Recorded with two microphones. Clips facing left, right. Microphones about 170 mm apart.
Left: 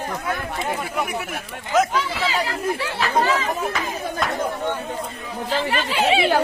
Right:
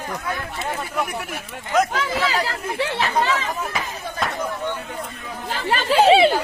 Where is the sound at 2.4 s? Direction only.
25° right (ahead or behind).